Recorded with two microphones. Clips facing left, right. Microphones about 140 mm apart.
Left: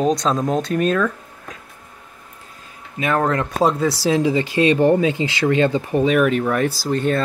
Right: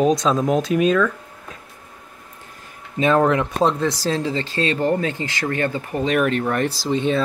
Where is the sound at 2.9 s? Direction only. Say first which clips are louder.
Right 3 dB; 25° right (ahead or behind).